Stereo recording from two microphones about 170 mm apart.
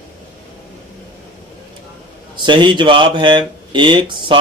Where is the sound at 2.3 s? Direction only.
25° right (ahead or behind).